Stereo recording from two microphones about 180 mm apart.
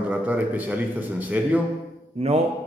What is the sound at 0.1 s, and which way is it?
A man's voice, 10° right (ahead or behind).